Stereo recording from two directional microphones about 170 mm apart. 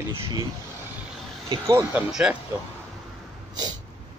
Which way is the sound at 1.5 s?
20° right (ahead or behind).